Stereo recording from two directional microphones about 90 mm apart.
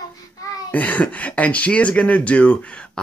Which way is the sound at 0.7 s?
20° left (ahead or behind).